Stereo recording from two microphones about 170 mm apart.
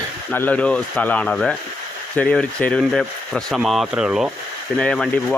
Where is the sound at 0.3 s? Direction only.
10° left (ahead or behind).